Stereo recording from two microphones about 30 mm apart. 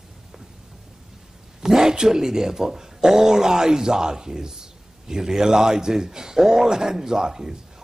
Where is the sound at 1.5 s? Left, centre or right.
Centre.